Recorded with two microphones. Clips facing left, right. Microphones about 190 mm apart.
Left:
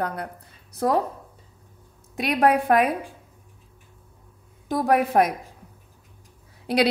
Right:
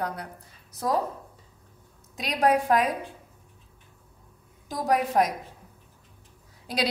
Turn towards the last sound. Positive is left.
turn(degrees=60)  # may be behind; listen again after turning